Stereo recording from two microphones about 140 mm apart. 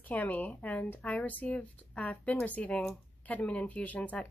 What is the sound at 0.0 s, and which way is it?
Speech, 10° left (ahead or behind).